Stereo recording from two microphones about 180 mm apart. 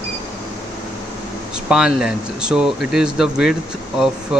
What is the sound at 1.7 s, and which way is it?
Speech, centre (ahead or behind).